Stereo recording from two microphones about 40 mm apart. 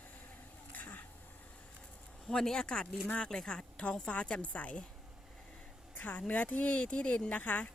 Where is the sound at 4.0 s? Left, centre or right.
Left.